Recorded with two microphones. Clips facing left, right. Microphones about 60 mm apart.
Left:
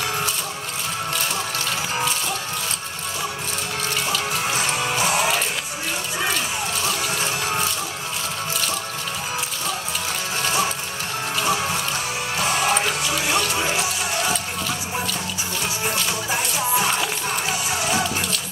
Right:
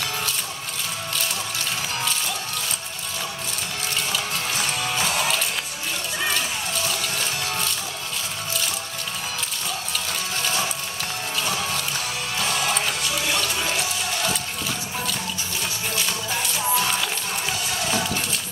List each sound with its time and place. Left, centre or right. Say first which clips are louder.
4.5 s music: left 3 dB; centre
7.2 s music: left 3 dB; left
10.4 s music: left 5 dB; centre
16.1 s music: left 3 dB; centre